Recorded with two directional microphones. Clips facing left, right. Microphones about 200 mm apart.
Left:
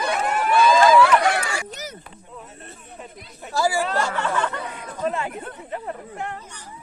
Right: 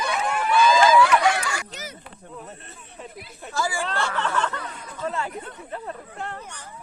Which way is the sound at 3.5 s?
40° left (ahead or behind).